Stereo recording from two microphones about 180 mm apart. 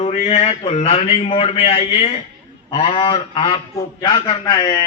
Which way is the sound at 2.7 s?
30° left (ahead or behind).